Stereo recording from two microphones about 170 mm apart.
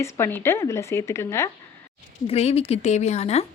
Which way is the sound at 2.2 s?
40° left (ahead or behind).